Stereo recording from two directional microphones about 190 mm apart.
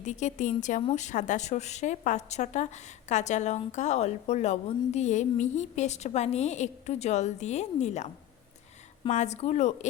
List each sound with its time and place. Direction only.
0.0 s a woman's voice: 40° left (ahead or behind)
9.0 s a woman's voice: 40° left (ahead or behind)